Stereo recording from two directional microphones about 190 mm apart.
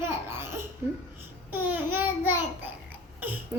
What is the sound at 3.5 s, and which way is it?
Babbling, 10° right (ahead or behind).